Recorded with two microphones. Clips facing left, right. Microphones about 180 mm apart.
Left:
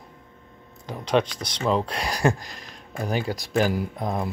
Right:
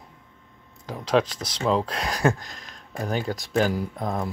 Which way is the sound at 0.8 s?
Centre (ahead or behind).